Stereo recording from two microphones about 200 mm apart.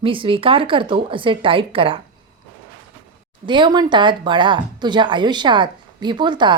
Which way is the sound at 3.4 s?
25° right (ahead or behind).